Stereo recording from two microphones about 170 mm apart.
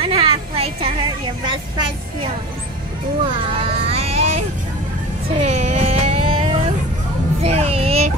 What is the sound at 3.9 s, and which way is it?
Vehicle, 35° right (ahead or behind).